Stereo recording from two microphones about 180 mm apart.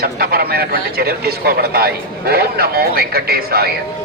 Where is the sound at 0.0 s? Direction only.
55° right (ahead or behind).